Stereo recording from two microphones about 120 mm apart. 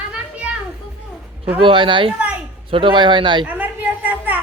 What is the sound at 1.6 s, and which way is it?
Speech, 45° right (ahead or behind).